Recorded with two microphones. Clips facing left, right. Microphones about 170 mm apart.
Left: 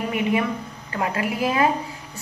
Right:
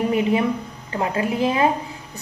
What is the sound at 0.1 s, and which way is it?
A woman's voice, 30° right (ahead or behind).